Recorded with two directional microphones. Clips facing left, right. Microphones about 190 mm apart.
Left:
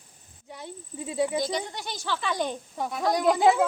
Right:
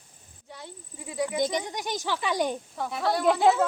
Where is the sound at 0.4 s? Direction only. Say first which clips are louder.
Left 3 dB; 20° left (ahead or behind).